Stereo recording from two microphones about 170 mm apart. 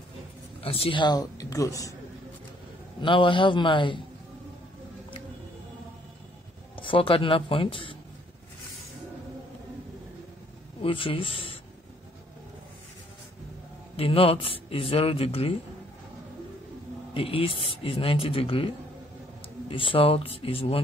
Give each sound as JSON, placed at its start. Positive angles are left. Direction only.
{"t": 0.6, "sound": "speech", "side_deg": 35}
{"t": 3.0, "sound": "a man's voice", "side_deg": 30}
{"t": 6.8, "sound": "a man's voice", "side_deg": 30}
{"t": 10.8, "sound": "a man's voice", "side_deg": 30}
{"t": 13.9, "sound": "a man's voice", "side_deg": 35}
{"t": 17.1, "sound": "a man's voice", "side_deg": 35}
{"t": 19.7, "sound": "a man's voice", "side_deg": 30}